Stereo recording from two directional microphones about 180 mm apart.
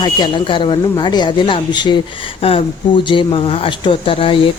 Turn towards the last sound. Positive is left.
turn(degrees=30)  # may be behind; listen again after turning